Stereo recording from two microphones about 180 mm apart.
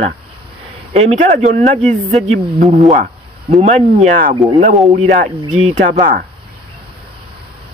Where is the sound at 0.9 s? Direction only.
40° right (ahead or behind).